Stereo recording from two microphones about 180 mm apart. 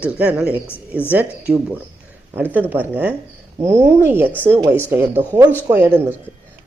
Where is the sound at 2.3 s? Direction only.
10° right (ahead or behind).